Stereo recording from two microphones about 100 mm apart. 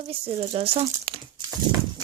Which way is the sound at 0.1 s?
70° right (ahead or behind).